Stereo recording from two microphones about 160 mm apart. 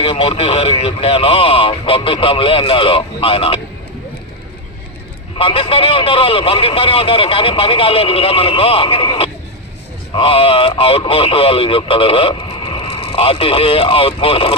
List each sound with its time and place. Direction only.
0.0 s speech: 35° left (ahead or behind)
5.4 s speech: 35° left (ahead or behind)